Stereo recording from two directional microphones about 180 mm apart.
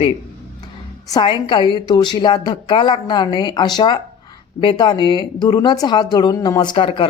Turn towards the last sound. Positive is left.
turn(degrees=30)  # may be behind; listen again after turning